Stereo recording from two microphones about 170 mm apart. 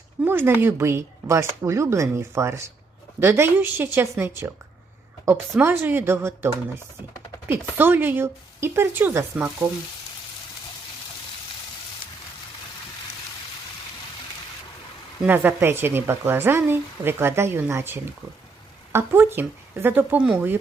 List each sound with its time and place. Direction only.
0.3 s speech: 15° right (ahead or behind)
15.2 s speech: 10° right (ahead or behind)